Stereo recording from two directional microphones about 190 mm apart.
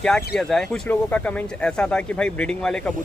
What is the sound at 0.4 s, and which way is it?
A man's voice, 5° left (ahead or behind).